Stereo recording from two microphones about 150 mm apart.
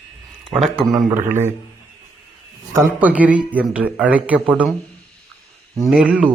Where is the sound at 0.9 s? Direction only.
25° right (ahead or behind).